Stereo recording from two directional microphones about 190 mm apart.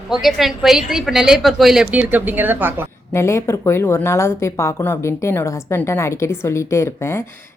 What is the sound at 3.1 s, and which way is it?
Speech, 15° left (ahead or behind).